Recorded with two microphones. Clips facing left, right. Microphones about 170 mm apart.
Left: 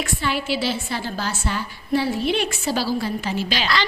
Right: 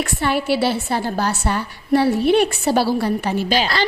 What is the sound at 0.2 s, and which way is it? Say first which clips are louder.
A woman's voice: right 7 dB; 60° right (ahead or behind).